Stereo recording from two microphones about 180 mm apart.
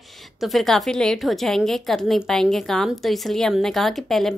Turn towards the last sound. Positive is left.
turn(degrees=0)  # may be behind; listen again after turning